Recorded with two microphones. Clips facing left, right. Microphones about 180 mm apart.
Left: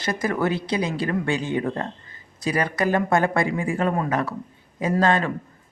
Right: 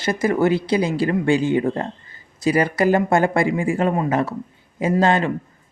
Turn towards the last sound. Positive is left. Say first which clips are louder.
# right 3 dB
turn(degrees=-25)  # may be behind; listen again after turning